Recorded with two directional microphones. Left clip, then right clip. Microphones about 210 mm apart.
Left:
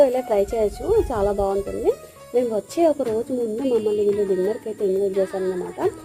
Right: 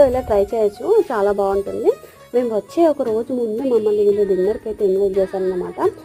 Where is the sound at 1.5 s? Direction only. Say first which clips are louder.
Right 4 dB; centre (ahead or behind).